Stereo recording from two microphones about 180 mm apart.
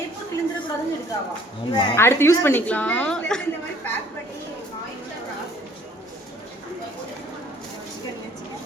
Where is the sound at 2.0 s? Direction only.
15° left (ahead or behind).